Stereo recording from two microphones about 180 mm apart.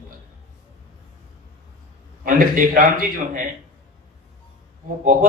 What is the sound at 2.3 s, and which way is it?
Speech, 50° right (ahead or behind).